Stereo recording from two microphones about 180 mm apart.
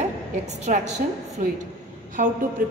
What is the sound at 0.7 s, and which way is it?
Speech, 45° right (ahead or behind).